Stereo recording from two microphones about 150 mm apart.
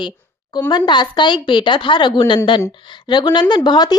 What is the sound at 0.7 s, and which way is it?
Speech, 30° left (ahead or behind).